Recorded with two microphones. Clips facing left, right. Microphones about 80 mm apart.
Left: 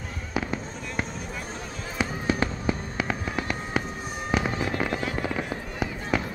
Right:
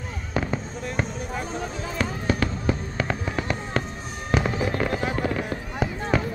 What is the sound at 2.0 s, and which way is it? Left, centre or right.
Fireworks, centre.